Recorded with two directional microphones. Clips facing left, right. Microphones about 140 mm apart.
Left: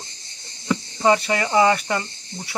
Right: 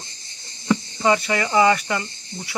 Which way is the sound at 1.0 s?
30° left (ahead or behind).